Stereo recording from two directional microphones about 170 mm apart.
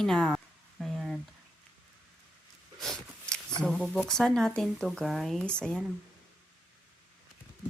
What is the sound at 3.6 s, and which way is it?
Speech, 5° left (ahead or behind).